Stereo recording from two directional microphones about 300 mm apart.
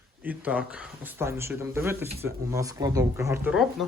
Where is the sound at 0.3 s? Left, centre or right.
Centre.